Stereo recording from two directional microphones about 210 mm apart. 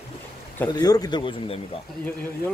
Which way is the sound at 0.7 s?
20° left (ahead or behind).